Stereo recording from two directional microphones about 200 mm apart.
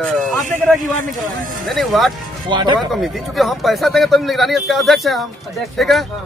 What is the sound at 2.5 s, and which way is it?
Speech, 20° right (ahead or behind).